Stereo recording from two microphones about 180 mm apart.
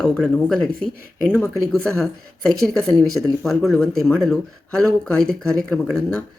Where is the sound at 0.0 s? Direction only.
5° left (ahead or behind).